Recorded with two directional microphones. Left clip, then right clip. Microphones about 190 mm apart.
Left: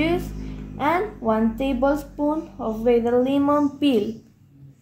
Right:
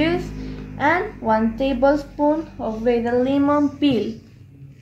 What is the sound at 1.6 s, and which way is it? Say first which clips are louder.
A woman's voice: right 4 dB; 40° left (ahead or behind).